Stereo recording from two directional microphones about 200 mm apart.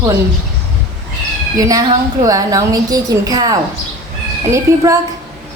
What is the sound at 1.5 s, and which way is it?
A woman's voice, 15° right (ahead or behind).